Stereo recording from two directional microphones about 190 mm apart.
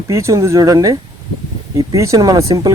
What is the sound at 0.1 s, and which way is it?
Speech, 15° right (ahead or behind).